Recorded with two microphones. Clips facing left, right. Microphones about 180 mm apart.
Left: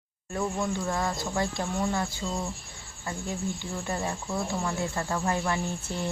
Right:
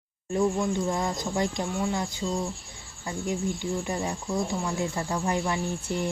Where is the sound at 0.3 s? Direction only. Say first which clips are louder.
Right 4 dB; 20° right (ahead or behind).